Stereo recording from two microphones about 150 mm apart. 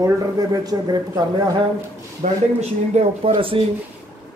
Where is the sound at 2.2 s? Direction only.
45° right (ahead or behind).